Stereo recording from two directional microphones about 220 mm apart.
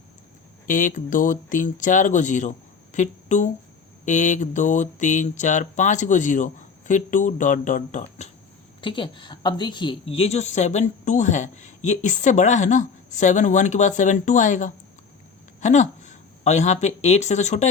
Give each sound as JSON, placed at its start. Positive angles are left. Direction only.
{"t": 0.7, "sound": "a woman's voice", "side_deg": 35}
{"t": 8.8, "sound": "a woman's voice", "side_deg": 20}